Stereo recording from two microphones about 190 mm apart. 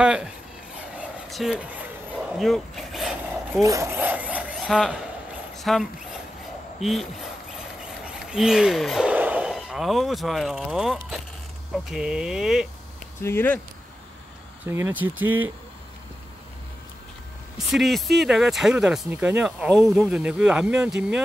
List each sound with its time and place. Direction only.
0.0 s speech: 5° right (ahead or behind)
0.9 s a sound: 5° right (ahead or behind)
3.6 s rub: 15° right (ahead or behind)
5.6 s speech: centre (ahead or behind)
8.3 s speech: 5° right (ahead or behind)
13.2 s speech: 10° left (ahead or behind)
14.7 s speech: 10° right (ahead or behind)
17.6 s speech: centre (ahead or behind)